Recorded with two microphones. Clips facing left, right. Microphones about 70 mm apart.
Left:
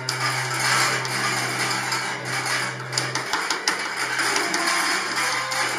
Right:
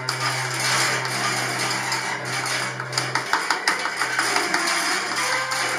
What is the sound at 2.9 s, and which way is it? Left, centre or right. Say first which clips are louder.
Music: right 3 dB; right.